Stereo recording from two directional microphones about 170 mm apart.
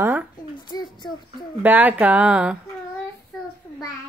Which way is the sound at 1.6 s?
10° right (ahead or behind).